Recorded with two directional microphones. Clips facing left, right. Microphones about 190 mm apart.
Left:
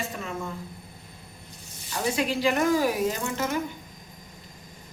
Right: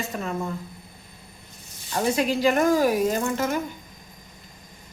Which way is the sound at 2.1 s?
45° right (ahead or behind).